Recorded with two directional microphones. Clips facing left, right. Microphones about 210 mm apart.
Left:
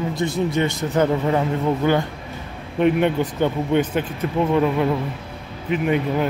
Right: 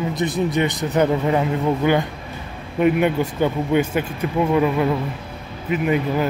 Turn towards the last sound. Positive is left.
turn(degrees=-5)  # may be behind; listen again after turning